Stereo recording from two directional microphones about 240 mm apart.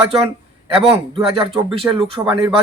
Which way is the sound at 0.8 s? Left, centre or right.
Right.